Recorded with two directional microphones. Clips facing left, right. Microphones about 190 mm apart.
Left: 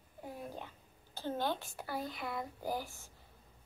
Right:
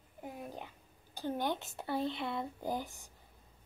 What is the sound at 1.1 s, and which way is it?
Speech, 15° right (ahead or behind).